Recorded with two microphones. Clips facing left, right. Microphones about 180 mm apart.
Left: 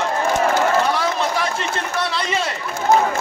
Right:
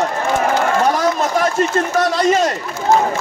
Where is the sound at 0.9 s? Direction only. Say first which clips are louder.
Right 4 dB; 45° right (ahead or behind).